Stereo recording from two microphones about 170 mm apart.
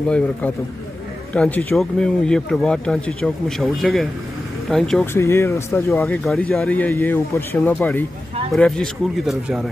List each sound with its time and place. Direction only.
1.3 s speech: 10° left (ahead or behind)
5.1 s speech: 15° left (ahead or behind); by 9.7 s centre (ahead or behind)